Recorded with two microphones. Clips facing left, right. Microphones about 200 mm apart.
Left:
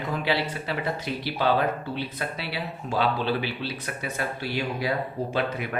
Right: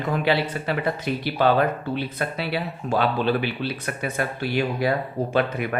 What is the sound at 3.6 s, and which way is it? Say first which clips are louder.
Speech: right 5 dB; 55° right (ahead or behind).